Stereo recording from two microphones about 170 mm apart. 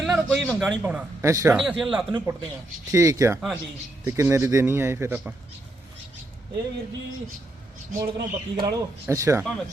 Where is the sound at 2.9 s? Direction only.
20° right (ahead or behind).